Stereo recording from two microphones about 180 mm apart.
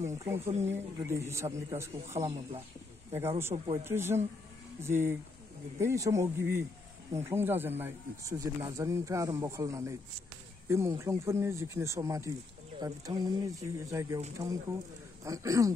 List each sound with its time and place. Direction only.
0.2 s speech: 15° right (ahead or behind)